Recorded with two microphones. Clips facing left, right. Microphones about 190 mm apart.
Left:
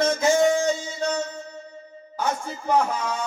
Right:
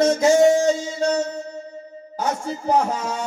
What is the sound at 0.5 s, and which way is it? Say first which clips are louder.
Music: right 5 dB; 40° right (ahead or behind).